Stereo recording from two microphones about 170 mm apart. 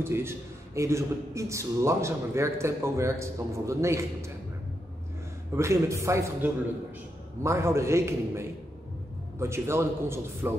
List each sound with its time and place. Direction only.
0.0 s a man's voice: 15° right (ahead or behind)
5.6 s a man's voice: 15° right (ahead or behind)